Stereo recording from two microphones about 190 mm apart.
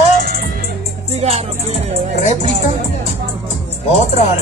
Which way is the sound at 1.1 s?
35° right (ahead or behind).